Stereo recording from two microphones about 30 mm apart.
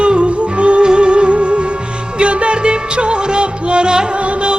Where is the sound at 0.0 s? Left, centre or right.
Right.